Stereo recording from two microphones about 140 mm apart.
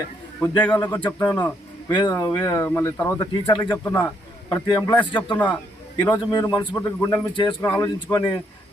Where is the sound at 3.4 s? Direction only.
30° left (ahead or behind).